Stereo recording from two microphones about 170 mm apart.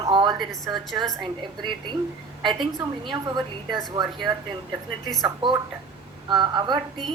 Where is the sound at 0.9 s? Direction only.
25° right (ahead or behind).